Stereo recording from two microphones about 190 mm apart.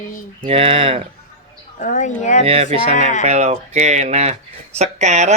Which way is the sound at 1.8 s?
40° left (ahead or behind).